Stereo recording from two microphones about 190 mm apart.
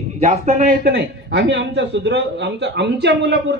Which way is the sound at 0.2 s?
40° right (ahead or behind).